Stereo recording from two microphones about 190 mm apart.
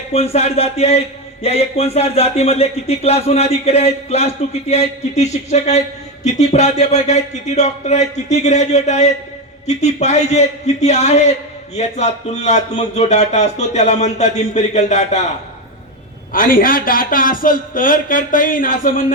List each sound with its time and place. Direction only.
0.1 s a man's voice: 35° left (ahead or behind)
16.3 s a man's voice: 45° left (ahead or behind)